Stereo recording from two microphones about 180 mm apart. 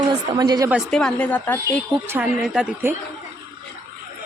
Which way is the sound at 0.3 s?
20° right (ahead or behind).